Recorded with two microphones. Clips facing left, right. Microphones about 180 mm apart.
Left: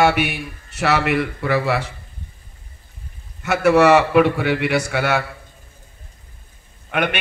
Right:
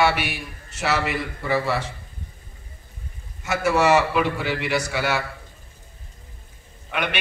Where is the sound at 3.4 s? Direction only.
60° left (ahead or behind).